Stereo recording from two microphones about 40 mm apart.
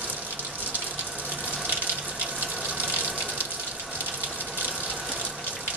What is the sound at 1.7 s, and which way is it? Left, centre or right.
Water, right.